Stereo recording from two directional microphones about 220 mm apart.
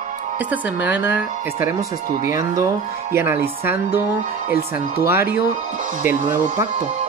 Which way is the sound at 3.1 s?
10° right (ahead or behind).